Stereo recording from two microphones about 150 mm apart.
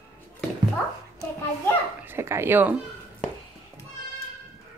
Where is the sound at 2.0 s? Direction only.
15° right (ahead or behind).